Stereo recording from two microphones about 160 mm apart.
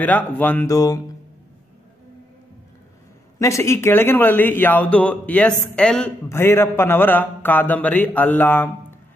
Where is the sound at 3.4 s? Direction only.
20° left (ahead or behind).